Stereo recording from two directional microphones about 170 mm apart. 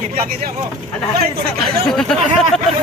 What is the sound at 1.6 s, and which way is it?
Speech, centre (ahead or behind).